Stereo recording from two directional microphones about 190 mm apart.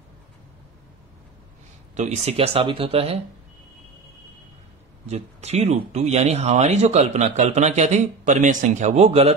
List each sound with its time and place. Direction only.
2.0 s speech: 35° right (ahead or behind)
5.0 s speech: 35° right (ahead or behind)